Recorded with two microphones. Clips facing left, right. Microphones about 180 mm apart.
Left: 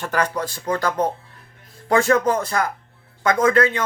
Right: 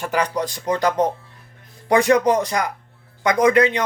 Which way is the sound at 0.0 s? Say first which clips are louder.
Right 1 dB; 15° right (ahead or behind).